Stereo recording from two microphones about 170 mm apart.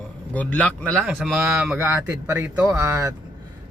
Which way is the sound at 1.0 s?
5° right (ahead or behind).